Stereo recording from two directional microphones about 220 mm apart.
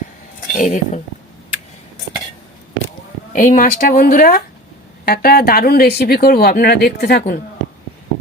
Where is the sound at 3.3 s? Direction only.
35° left (ahead or behind).